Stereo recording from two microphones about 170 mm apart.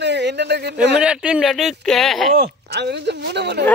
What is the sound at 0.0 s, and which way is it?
Speech, 90° right.